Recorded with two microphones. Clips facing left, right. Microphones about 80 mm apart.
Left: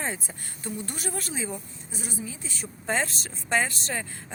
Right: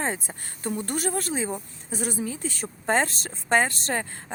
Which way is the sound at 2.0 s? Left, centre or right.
Right.